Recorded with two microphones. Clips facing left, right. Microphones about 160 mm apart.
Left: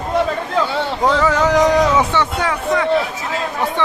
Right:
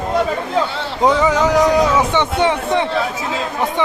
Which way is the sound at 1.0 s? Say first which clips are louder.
Right 2 dB; 15° right (ahead or behind).